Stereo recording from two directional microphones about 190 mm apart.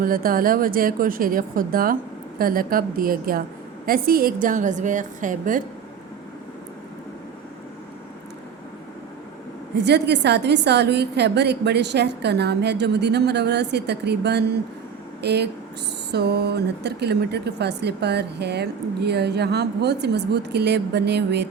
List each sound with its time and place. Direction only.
0.0 s a woman's voice: 50° right (ahead or behind)
9.7 s speech: 65° right (ahead or behind)